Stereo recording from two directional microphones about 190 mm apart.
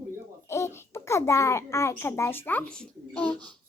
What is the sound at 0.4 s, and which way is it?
A child's voice, 15° left (ahead or behind).